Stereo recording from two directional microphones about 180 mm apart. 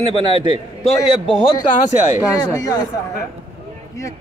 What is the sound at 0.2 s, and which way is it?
Speech, 25° right (ahead or behind).